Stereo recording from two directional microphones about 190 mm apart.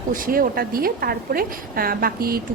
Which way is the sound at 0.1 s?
50° right (ahead or behind).